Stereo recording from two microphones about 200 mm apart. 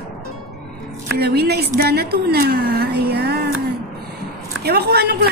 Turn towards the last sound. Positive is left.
turn(degrees=-55)  # may be behind; listen again after turning